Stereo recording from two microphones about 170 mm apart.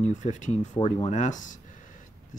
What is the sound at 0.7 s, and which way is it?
Speech, 35° left (ahead or behind).